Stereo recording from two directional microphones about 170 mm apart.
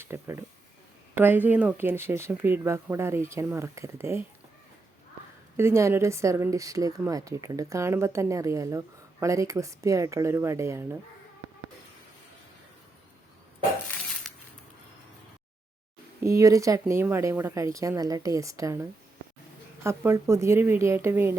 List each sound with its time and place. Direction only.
0.0 s speech: 15° right (ahead or behind)
5.5 s speech: 15° right (ahead or behind)
14.3 s a sound: centre (ahead or behind)
16.2 s speech: 20° right (ahead or behind)